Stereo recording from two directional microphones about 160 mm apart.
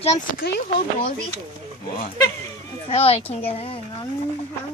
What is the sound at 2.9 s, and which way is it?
A child's voice, 35° left (ahead or behind).